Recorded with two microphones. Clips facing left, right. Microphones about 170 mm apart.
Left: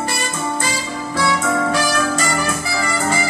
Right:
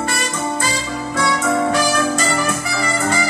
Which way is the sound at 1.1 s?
20° right (ahead or behind).